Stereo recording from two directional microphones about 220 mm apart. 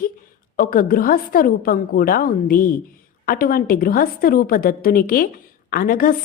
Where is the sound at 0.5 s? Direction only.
40° left (ahead or behind).